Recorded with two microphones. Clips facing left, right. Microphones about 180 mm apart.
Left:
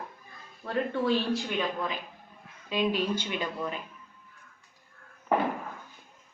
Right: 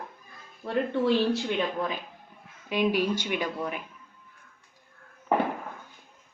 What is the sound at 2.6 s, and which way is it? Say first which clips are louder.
A woman's voice: right 3 dB; 10° right (ahead or behind).